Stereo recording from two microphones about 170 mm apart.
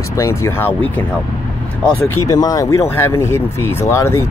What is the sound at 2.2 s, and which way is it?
Speech, 20° left (ahead or behind).